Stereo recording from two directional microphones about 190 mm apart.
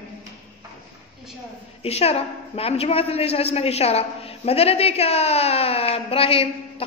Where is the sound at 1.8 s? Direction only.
30° left (ahead or behind).